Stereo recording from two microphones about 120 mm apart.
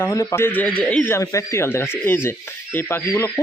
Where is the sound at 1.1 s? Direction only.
25° left (ahead or behind).